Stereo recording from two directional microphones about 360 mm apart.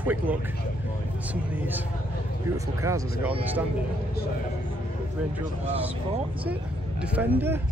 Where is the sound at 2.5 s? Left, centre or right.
Centre.